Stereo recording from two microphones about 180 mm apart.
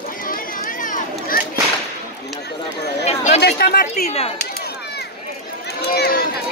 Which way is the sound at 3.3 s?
65° left (ahead or behind).